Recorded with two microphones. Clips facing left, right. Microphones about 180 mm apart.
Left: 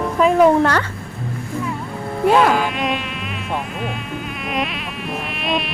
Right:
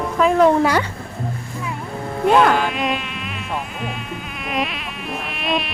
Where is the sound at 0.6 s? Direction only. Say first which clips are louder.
Even; 10° right (ahead or behind).